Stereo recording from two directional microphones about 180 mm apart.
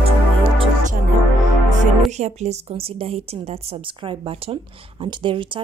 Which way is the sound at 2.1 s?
40° right (ahead or behind).